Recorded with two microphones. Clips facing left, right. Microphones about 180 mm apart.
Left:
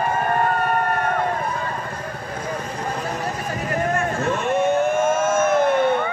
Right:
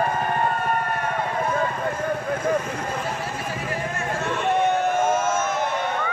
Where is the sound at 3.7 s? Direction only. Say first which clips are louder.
Left 7 dB; 50° left (ahead or behind).